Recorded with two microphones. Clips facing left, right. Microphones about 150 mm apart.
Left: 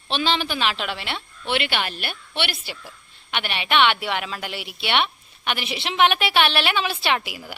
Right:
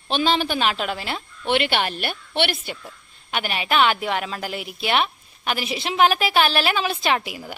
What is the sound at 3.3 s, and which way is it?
A woman's voice, 40° right (ahead or behind).